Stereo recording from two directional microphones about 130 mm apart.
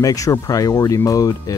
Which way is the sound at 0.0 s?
25° left (ahead or behind).